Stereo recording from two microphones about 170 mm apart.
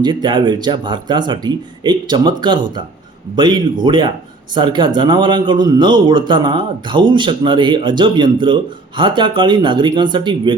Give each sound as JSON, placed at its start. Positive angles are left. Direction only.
{"t": 0.0, "sound": "speech", "side_deg": -25}